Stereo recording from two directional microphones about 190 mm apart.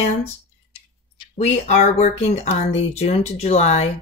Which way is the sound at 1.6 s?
40° left (ahead or behind).